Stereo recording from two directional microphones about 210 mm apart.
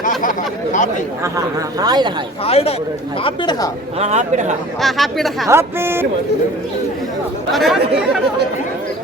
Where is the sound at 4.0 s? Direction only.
35° right (ahead or behind).